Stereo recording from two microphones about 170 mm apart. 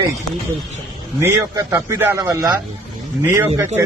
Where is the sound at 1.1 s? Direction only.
15° right (ahead or behind).